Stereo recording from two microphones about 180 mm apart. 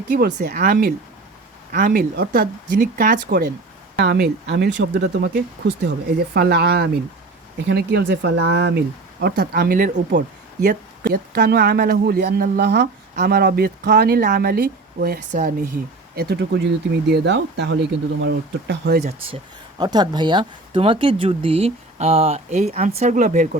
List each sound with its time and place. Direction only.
0.1 s speech: 65° right (ahead or behind)
4.0 s speech: 70° right (ahead or behind)
9.2 s speech: 60° right (ahead or behind)
19.8 s speech: 25° right (ahead or behind); by 23.6 s 45° right (ahead or behind)